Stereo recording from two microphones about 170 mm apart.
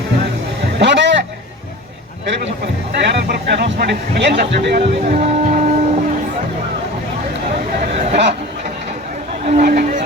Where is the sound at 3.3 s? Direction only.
80° right.